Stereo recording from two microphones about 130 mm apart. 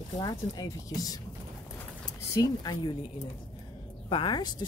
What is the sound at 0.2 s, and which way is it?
Speech, 25° left (ahead or behind).